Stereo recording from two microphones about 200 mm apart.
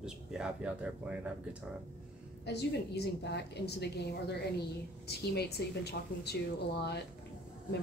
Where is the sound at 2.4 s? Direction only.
55° left (ahead or behind).